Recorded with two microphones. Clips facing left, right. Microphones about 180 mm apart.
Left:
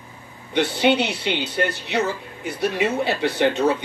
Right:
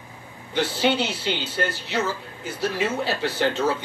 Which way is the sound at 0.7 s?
20° left (ahead or behind).